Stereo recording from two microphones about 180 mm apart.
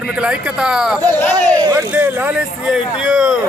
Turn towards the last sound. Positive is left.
turn(degrees=-5)  # may be behind; listen again after turning